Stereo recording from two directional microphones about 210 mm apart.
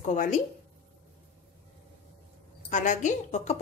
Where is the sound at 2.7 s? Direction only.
35° left (ahead or behind).